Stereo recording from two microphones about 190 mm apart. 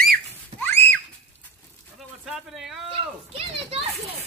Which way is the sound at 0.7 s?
10° left (ahead or behind).